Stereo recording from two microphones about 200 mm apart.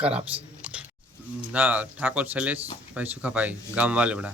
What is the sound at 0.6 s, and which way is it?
Chewing, 5° right (ahead or behind).